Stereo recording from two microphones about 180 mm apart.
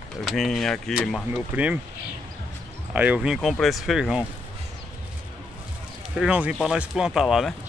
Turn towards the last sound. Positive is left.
turn(degrees=0)  # may be behind; listen again after turning